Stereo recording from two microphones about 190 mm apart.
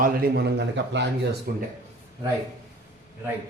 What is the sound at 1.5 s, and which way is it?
Speech, 55° right (ahead or behind).